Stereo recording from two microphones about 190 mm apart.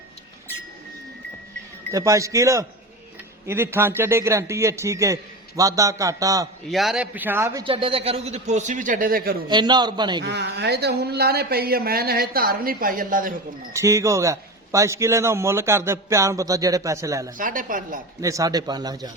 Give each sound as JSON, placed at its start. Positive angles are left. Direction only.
{"t": 1.9, "sound": "a man's voice", "side_deg": -15}
{"t": 6.7, "sound": "a man's voice", "side_deg": 0}
{"t": 7.6, "sound": "a man's voice", "side_deg": -30}
{"t": 9.5, "sound": "speech", "side_deg": -25}
{"t": 10.2, "sound": "speech", "side_deg": -60}
{"t": 13.7, "sound": "a man's voice", "side_deg": -15}
{"t": 17.3, "sound": "a woman's voice", "side_deg": -45}
{"t": 18.2, "sound": "speech", "side_deg": -15}